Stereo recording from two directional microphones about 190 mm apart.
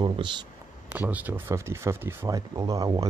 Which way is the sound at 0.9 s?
10° right (ahead or behind).